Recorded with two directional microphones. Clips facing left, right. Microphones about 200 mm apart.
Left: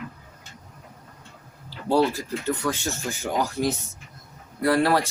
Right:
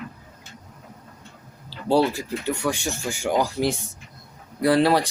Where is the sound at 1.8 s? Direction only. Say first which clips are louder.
Right 1 dB; 15° right (ahead or behind).